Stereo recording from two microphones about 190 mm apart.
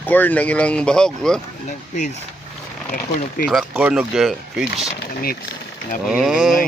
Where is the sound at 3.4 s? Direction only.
5° right (ahead or behind).